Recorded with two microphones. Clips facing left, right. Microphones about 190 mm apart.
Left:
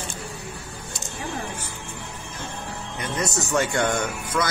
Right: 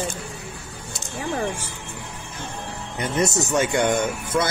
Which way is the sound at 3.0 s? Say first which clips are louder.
Right 5 dB; 25° right (ahead or behind).